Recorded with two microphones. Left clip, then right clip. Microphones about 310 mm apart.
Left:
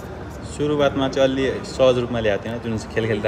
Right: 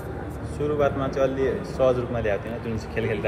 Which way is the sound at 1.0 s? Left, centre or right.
Left.